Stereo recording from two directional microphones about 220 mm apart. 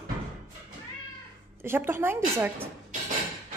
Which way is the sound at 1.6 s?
10° right (ahead or behind).